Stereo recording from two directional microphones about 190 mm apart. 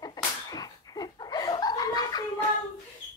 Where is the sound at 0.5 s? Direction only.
20° left (ahead or behind).